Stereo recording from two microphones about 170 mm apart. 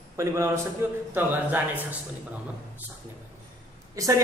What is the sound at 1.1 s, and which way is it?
Speech, 10° right (ahead or behind).